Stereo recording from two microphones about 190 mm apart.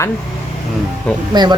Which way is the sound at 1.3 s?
20° right (ahead or behind).